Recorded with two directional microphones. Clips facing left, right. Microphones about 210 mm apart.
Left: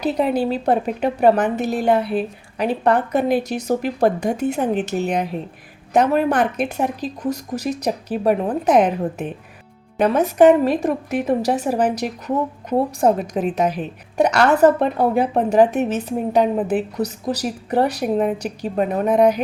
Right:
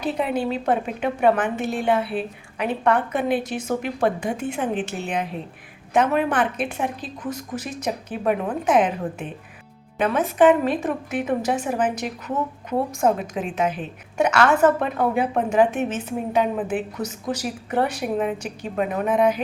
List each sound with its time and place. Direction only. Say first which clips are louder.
0.0 s a woman's voice: left 4 dB; 40° left (ahead or behind)